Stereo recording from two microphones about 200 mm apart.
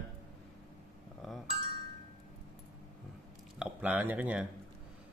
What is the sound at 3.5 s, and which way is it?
Speech, 10° right (ahead or behind).